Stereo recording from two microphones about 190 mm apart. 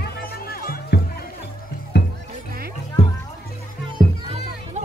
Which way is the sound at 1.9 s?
65° left (ahead or behind).